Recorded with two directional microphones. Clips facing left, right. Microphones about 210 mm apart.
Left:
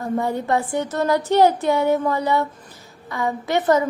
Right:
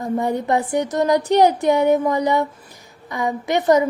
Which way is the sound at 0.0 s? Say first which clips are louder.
Right 2 dB; 15° right (ahead or behind).